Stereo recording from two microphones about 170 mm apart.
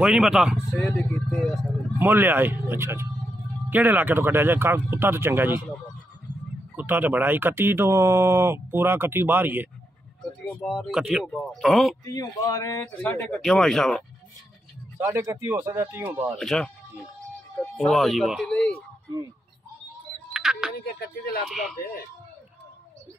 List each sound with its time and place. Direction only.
0.0 s a sound: 5° right (ahead or behind)
2.0 s speech: 10° right (ahead or behind)
6.8 s speech: 10° right (ahead or behind)
10.4 s speech: 5° left (ahead or behind)
12.0 s a man's voice: 20° left (ahead or behind); by 14.0 s 5° left (ahead or behind)
15.0 s speech: 15° right (ahead or behind)
16.3 s speech: 5° left (ahead or behind)
17.7 s speech: centre (ahead or behind)
20.3 s music: 5° right (ahead or behind)
20.7 s speech: 65° left (ahead or behind)
21.5 s speech: centre (ahead or behind)